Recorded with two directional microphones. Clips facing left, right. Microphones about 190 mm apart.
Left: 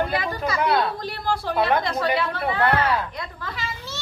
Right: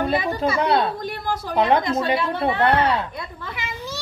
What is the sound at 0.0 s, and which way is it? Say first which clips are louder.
A woman's voice: right 3 dB; 25° right (ahead or behind).